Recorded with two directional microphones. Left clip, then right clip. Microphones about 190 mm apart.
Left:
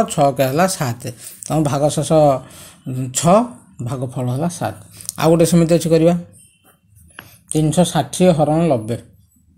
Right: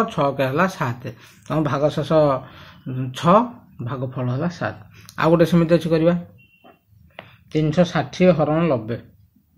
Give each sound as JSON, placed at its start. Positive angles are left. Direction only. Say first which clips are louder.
{"t": 0.0, "sound": "speech", "louder": "left 5 dB", "side_deg": 30}
{"t": 7.2, "sound": "speech", "louder": "left 3 dB", "side_deg": 25}